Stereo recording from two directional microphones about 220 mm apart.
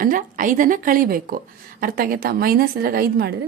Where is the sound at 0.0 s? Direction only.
40° right (ahead or behind).